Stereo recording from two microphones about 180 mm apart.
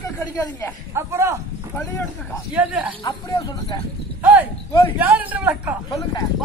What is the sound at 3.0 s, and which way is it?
Speech, 20° left (ahead or behind).